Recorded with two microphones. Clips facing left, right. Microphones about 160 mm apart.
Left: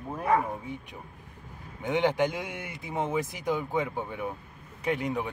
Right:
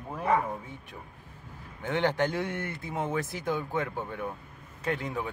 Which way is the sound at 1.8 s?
15° left (ahead or behind).